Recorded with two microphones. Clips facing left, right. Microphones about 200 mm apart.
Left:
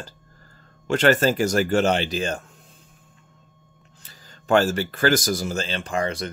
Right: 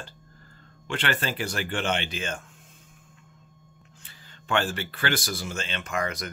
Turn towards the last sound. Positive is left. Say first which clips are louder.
# left 5 dB
turn(degrees=30)  # may be behind; listen again after turning